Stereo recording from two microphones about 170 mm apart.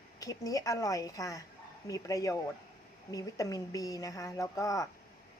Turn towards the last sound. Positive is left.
turn(degrees=20)  # may be behind; listen again after turning